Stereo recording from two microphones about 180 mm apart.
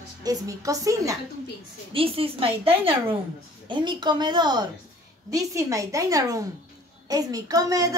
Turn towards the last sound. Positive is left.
turn(degrees=-20)  # may be behind; listen again after turning